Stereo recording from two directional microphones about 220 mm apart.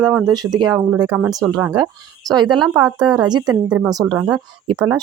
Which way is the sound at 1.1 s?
5° right (ahead or behind).